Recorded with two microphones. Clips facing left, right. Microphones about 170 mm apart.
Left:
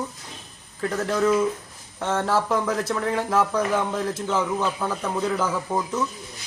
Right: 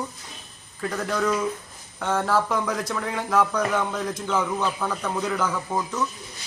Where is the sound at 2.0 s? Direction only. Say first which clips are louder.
Even; 25° left (ahead or behind).